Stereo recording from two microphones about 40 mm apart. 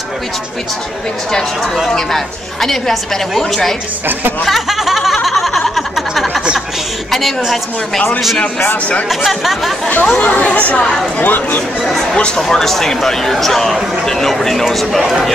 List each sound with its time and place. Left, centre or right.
2.0 s a woman's voice: centre
4.5 s a sound: centre
7.1 s a woman's voice: centre
9.1 s speech: centre
10.0 s speech: left
10.3 s speech: left
12.4 s a woman's voice: centre